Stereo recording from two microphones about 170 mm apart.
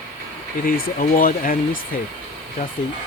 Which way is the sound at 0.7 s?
55° left (ahead or behind).